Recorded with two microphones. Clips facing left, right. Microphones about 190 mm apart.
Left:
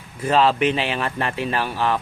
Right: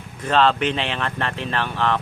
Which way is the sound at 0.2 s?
5° left (ahead or behind).